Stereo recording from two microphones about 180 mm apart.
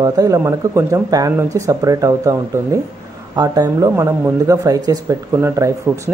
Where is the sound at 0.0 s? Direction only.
20° right (ahead or behind).